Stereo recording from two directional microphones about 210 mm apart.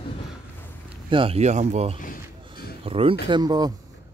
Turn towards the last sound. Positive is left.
turn(degrees=-20)  # may be behind; listen again after turning